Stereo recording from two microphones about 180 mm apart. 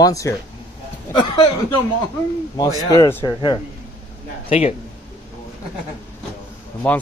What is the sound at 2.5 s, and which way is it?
Speech, 20° left (ahead or behind).